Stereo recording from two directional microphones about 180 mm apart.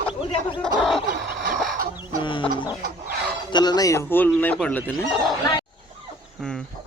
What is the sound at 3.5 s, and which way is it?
Speech, 20° left (ahead or behind).